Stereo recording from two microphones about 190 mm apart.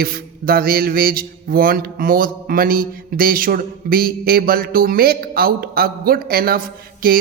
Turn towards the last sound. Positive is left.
turn(degrees=-50)  # may be behind; listen again after turning